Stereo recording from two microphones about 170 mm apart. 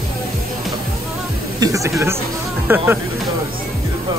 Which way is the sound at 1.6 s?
20° right (ahead or behind).